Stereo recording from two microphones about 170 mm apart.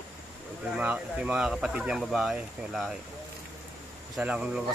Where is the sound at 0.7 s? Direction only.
5° right (ahead or behind).